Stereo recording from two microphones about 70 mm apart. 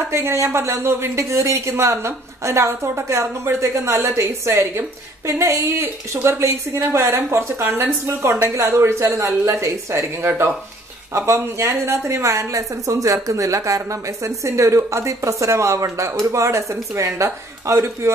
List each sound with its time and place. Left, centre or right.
0.1 s speech: right
5.7 s a woman's voice: right